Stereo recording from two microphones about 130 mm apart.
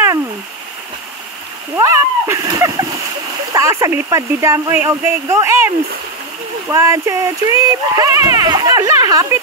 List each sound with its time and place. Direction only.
1.8 s splash: 20° right (ahead or behind)
3.5 s speech: 25° right (ahead or behind)
6.7 s speech: 25° right (ahead or behind)